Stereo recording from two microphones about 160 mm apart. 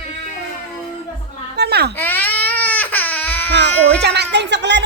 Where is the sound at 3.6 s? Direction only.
90° right.